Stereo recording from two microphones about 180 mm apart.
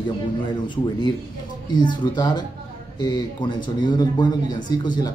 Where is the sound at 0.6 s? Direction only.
25° left (ahead or behind).